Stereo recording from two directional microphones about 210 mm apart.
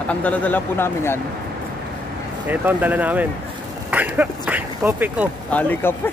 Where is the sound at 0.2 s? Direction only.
5° left (ahead or behind).